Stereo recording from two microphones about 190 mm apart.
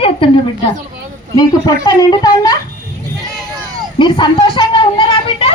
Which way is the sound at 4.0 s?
25° left (ahead or behind).